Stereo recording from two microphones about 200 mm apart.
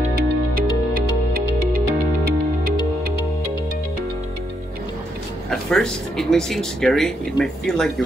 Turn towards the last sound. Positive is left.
turn(degrees=5)  # may be behind; listen again after turning